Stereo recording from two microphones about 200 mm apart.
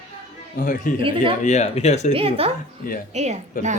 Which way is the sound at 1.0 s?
25° right (ahead or behind).